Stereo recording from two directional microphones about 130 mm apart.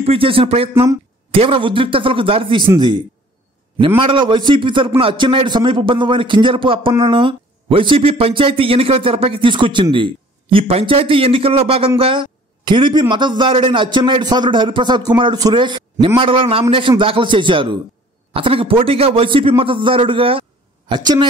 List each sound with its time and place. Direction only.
0.0 s speech: 45° right (ahead or behind)
3.8 s a man's voice: 40° right (ahead or behind)